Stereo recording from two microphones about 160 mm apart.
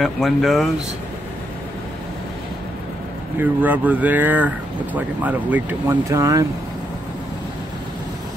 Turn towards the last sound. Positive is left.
turn(degrees=-20)  # may be behind; listen again after turning